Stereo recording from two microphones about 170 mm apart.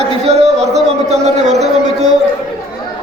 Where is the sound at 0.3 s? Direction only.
40° right (ahead or behind).